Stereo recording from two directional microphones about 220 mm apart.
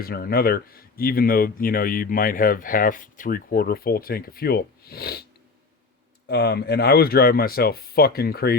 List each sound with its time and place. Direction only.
0.0 s speech: 45° left (ahead or behind)
6.2 s speech: 50° left (ahead or behind)